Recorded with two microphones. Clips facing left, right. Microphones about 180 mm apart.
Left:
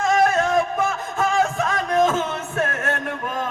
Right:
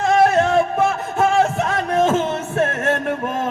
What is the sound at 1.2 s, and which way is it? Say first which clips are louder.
Music: right 4 dB; 30° right (ahead or behind).